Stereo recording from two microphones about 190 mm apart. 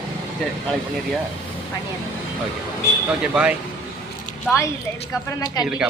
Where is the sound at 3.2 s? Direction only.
5° right (ahead or behind).